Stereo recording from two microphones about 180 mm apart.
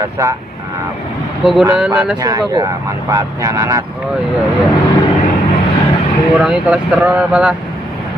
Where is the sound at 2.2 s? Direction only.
20° right (ahead or behind).